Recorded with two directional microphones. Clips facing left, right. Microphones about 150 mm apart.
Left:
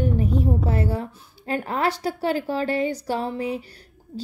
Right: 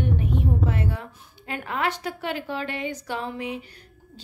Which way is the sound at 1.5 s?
35° left (ahead or behind).